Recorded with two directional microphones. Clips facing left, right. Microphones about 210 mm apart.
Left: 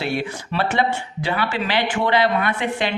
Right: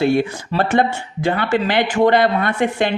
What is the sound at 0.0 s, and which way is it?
Speech, 50° right (ahead or behind).